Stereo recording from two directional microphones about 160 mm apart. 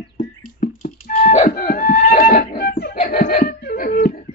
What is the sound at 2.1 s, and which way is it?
Music, 50° left (ahead or behind).